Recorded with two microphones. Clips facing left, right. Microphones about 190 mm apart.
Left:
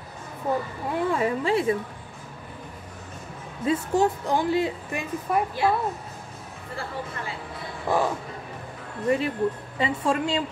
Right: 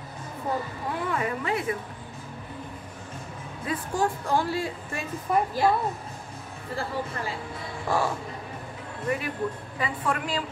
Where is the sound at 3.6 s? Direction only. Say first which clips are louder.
Left 5 dB; 25° left (ahead or behind).